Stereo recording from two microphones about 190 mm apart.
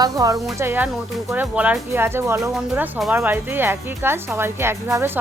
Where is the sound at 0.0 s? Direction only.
20° right (ahead or behind).